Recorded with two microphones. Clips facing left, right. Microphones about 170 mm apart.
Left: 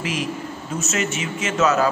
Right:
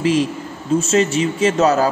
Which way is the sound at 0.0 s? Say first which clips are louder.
Right 9 dB; 30° right (ahead or behind).